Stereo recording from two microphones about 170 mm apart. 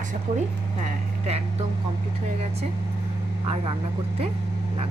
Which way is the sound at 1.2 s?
40° right (ahead or behind).